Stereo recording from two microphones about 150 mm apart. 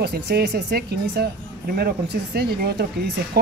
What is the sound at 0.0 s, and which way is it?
Speech, 90° right.